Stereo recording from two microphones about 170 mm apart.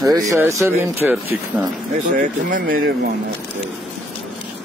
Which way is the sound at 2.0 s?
50° right (ahead or behind).